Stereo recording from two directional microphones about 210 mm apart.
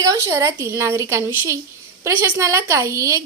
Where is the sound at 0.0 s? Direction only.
15° right (ahead or behind).